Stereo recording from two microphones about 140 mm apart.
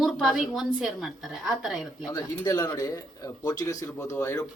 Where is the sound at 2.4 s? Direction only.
25° left (ahead or behind).